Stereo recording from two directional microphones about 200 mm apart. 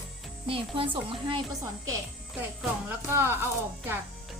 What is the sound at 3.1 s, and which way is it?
Speech, 10° right (ahead or behind).